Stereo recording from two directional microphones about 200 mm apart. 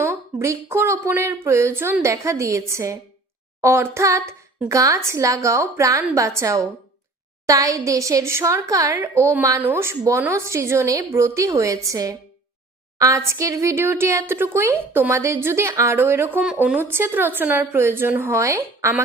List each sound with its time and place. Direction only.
0.0 s speech: 15° right (ahead or behind)